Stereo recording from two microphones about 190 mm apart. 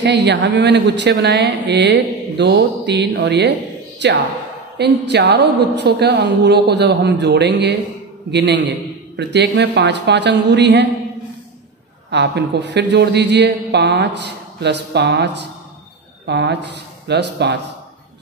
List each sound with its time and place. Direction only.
0.0 s speech: 65° right (ahead or behind)
12.1 s speech: 65° right (ahead or behind)